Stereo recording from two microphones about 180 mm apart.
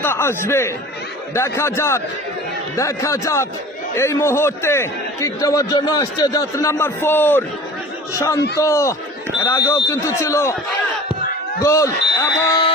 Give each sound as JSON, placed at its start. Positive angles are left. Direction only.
{"t": 0.0, "sound": "a man's voice", "side_deg": 15}
{"t": 11.6, "sound": "speech", "side_deg": 15}